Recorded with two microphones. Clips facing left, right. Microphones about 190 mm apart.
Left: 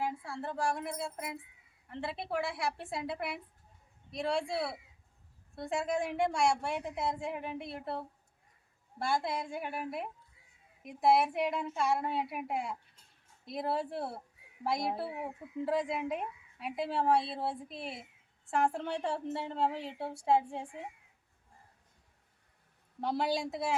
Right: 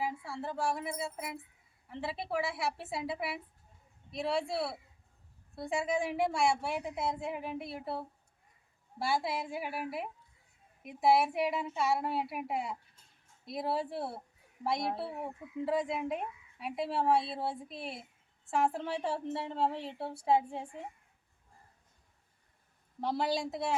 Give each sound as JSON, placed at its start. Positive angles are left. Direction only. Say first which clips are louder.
{"t": 0.0, "sound": "speech", "louder": "even", "side_deg": 0}
{"t": 23.0, "sound": "speech", "louder": "even", "side_deg": 0}